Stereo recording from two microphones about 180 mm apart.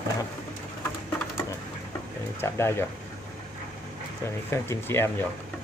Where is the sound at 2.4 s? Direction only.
15° left (ahead or behind).